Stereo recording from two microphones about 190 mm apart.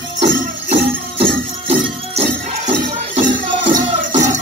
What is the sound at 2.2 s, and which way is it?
Music, 30° right (ahead or behind).